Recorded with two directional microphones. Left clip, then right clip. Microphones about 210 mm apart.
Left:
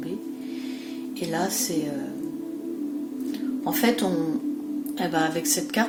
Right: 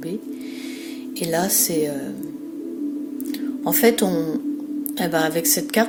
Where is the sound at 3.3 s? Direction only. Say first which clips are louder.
Right 4 dB; 45° right (ahead or behind).